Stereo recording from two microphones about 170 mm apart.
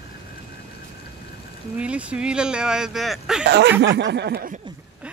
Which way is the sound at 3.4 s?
90° right.